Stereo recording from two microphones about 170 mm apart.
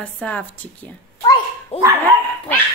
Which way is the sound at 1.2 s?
25° left (ahead or behind).